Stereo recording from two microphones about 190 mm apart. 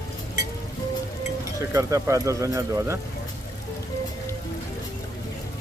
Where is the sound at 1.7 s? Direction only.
15° right (ahead or behind).